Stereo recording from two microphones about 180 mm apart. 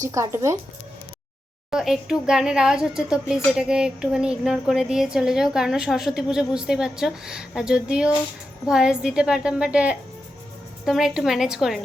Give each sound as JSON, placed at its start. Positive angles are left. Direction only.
{"t": 0.1, "sound": "speech", "side_deg": -15}
{"t": 1.7, "sound": "a woman's voice", "side_deg": -5}